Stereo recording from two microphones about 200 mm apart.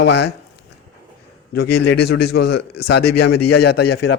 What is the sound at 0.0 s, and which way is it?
Speech, 60° left (ahead or behind).